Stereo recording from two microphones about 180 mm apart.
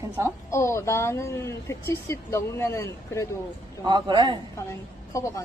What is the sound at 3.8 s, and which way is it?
Speech, 25° right (ahead or behind).